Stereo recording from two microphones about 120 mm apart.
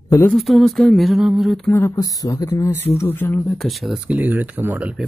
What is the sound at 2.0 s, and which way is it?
Speech, 25° left (ahead or behind).